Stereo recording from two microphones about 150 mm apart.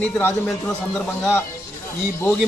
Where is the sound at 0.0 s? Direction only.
10° left (ahead or behind).